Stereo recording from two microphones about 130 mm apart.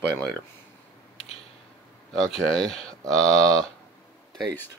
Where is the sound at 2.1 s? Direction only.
5° left (ahead or behind).